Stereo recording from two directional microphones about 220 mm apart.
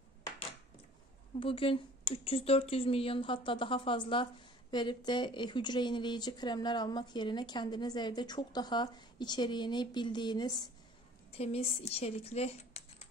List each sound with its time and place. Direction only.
1.4 s speech: 25° left (ahead or behind)